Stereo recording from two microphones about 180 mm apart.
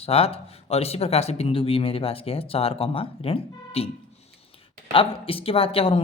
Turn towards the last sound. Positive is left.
turn(degrees=30)  # may be behind; listen again after turning